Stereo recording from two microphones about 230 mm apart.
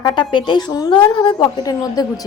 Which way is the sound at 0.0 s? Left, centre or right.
Centre.